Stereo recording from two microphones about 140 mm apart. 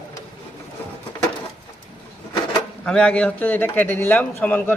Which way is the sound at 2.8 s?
5° left (ahead or behind).